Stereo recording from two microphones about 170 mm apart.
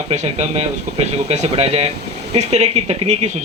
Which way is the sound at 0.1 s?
40° right (ahead or behind).